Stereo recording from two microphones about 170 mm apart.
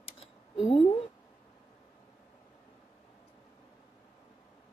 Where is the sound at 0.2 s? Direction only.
30° left (ahead or behind).